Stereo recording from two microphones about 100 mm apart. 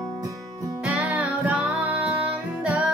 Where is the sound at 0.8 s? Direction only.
15° right (ahead or behind).